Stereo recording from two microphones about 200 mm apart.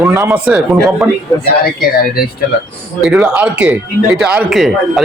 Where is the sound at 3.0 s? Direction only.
Centre (ahead or behind).